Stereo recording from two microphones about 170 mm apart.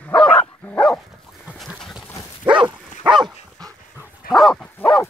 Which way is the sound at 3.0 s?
30° right (ahead or behind).